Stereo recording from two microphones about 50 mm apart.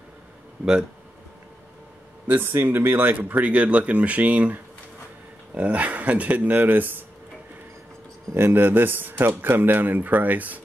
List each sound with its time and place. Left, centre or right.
2.2 s speech: right
8.4 s speech: right